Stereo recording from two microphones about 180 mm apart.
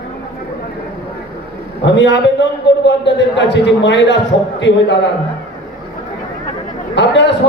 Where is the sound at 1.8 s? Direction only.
80° left.